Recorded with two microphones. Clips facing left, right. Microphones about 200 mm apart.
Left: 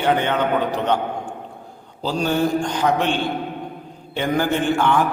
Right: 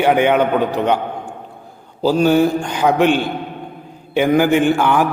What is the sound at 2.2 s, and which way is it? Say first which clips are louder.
A man's voice: right 2 dB; 5° right (ahead or behind).